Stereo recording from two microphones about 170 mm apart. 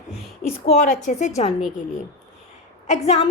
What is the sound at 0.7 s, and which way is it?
Speech, 45° left (ahead or behind).